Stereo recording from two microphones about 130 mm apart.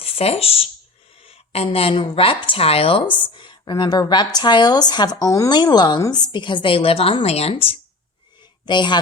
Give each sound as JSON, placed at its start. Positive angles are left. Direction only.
{"t": 0.0, "sound": "speech", "side_deg": 50}
{"t": 8.6, "sound": "speech", "side_deg": 35}